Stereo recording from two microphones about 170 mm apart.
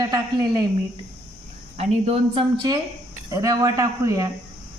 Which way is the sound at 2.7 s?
25° right (ahead or behind).